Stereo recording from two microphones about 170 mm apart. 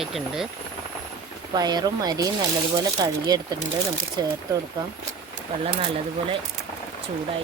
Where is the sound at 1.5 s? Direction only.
25° right (ahead or behind).